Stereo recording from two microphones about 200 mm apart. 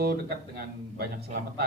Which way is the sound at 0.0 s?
50° right (ahead or behind).